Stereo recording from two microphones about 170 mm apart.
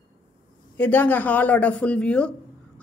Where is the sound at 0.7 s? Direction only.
10° left (ahead or behind).